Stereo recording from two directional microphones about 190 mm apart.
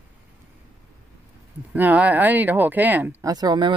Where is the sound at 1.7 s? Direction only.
10° right (ahead or behind).